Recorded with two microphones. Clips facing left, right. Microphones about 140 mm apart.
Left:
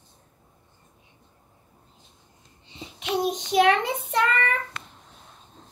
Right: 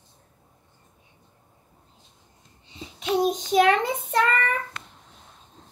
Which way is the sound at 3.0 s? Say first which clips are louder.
Right 3 dB; 40° right (ahead or behind).